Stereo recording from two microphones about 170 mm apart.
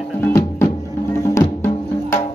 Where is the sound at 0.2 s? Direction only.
15° left (ahead or behind).